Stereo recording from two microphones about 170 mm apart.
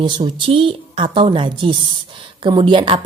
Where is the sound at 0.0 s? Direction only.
30° right (ahead or behind).